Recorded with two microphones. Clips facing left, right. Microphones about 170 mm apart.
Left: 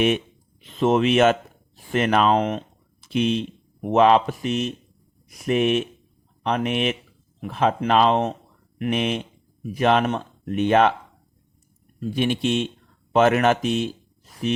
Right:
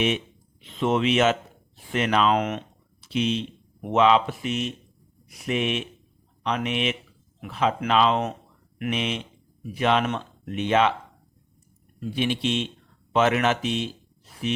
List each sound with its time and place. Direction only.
0.6 s speech: 40° left (ahead or behind)
2.3 s speech: 30° left (ahead or behind)
3.0 s speech: 50° left (ahead or behind)
12.1 s speech: 45° left (ahead or behind)